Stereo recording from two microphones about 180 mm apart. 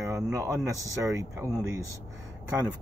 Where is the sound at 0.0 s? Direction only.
20° right (ahead or behind).